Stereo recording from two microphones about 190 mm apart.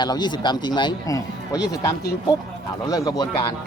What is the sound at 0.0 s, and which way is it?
Speech, 25° left (ahead or behind).